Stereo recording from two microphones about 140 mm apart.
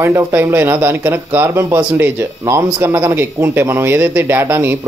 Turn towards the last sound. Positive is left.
turn(degrees=-15)  # may be behind; listen again after turning